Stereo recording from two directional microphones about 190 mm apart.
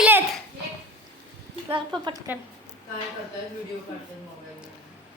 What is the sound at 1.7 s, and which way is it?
Speech, 25° right (ahead or behind).